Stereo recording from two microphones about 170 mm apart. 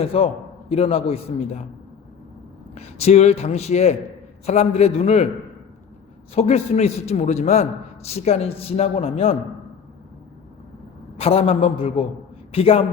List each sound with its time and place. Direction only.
0.0 s a man's voice: 35° left (ahead or behind)
2.7 s a man's voice: 40° left (ahead or behind)
6.3 s a man's voice: 40° left (ahead or behind)
11.2 s a man's voice: 35° left (ahead or behind)